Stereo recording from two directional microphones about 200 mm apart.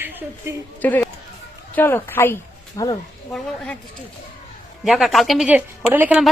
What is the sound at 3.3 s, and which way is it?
Speech, 5° left (ahead or behind).